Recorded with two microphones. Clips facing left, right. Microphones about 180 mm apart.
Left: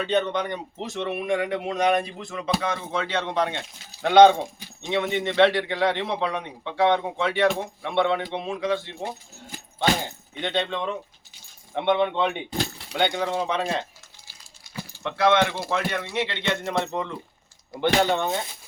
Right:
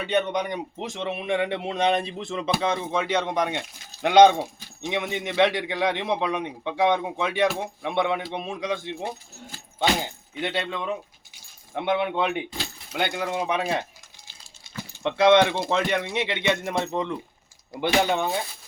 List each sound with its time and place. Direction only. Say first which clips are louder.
0.0 s a man's voice: left 1 dB; 10° right (ahead or behind)
10.4 s a man's voice: left 2 dB; 5° right (ahead or behind)
15.0 s a man's voice: right 3 dB; 20° right (ahead or behind)